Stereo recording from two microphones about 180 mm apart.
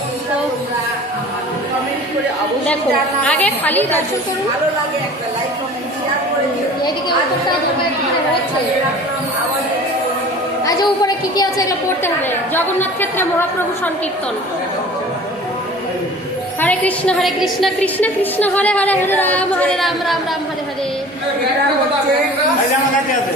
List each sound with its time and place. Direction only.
3.2 s a woman's voice: 10° left (ahead or behind)
10.7 s a woman's voice: 20° left (ahead or behind)
16.6 s a woman's voice: 10° left (ahead or behind)